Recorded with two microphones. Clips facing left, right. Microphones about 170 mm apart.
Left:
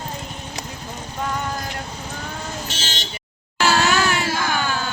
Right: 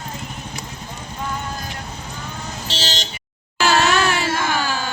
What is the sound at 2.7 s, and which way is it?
Vehicle, 40° right (ahead or behind).